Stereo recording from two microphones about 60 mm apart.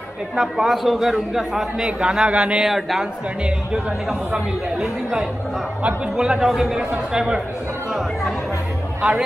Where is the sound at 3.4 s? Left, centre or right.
Centre.